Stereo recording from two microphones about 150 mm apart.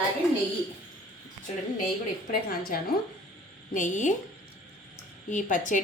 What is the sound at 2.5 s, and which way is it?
Speech, 80° left.